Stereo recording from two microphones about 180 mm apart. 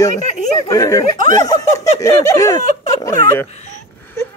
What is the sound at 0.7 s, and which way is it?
Speech, 20° left (ahead or behind).